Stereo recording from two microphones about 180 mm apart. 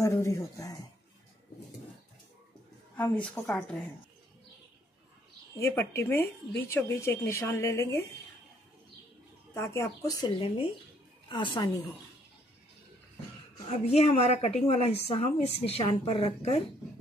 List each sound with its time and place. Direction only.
0.0 s speech: 15° left (ahead or behind)
3.0 s speech: 5° left (ahead or behind)
5.6 s speech: 15° left (ahead or behind)
9.5 s a woman's voice: 15° left (ahead or behind)
13.7 s a woman's voice: 35° left (ahead or behind)